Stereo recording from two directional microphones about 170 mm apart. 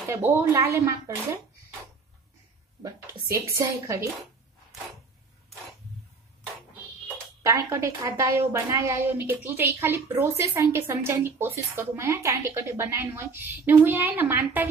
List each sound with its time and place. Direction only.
0.1 s a woman's voice: 15° right (ahead or behind)
3.5 s a woman's voice: 15° right (ahead or behind)
7.4 s a woman's voice: 20° right (ahead or behind)